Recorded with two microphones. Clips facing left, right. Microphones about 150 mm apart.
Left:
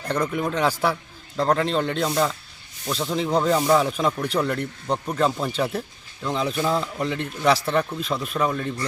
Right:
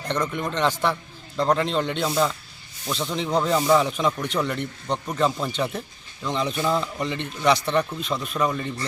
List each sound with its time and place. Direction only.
0.1 s a man's voice: 5° left (ahead or behind)